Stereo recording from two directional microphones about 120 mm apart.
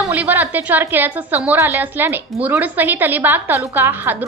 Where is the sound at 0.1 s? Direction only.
15° right (ahead or behind).